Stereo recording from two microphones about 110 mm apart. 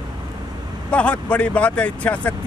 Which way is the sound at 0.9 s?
10° left (ahead or behind).